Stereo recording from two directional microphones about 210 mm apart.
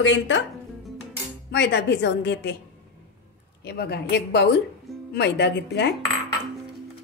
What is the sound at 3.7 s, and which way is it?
A woman's voice, 50° left (ahead or behind).